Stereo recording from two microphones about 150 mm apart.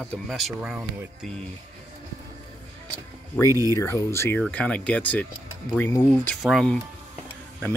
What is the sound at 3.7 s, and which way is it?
Speech, 20° left (ahead or behind).